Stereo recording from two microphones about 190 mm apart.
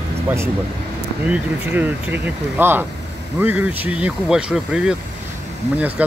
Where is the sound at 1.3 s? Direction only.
10° right (ahead or behind).